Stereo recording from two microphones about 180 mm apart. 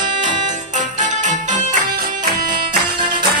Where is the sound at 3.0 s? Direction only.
25° right (ahead or behind).